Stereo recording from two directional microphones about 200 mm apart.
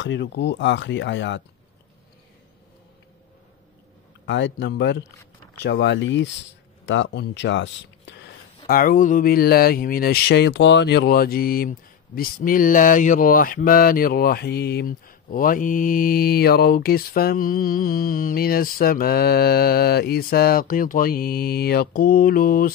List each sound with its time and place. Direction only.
0.0 s speech: 65° left (ahead or behind)
4.3 s speech: 65° left (ahead or behind)
6.9 s a sound: 65° left (ahead or behind); by 22.7 s 45° left (ahead or behind)